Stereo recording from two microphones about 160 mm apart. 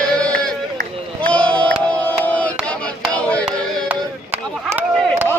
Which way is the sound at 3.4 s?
10° right (ahead or behind).